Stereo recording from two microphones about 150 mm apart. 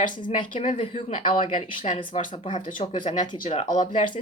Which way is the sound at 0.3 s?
40° left (ahead or behind).